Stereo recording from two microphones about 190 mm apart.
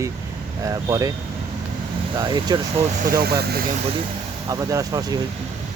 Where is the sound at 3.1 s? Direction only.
55° right (ahead or behind).